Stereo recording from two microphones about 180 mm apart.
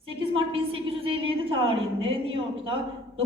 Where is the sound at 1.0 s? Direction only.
30° right (ahead or behind).